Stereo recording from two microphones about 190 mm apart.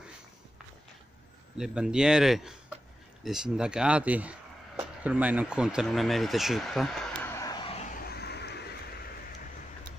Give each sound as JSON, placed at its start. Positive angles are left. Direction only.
{"t": 1.6, "sound": "speech", "side_deg": -5}
{"t": 7.3, "sound": "vehicle", "side_deg": 20}